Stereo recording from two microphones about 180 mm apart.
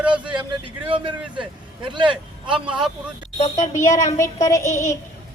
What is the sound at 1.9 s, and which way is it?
Vehicle, 25° right (ahead or behind).